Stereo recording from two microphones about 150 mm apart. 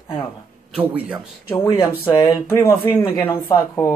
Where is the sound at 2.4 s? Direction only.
15° left (ahead or behind).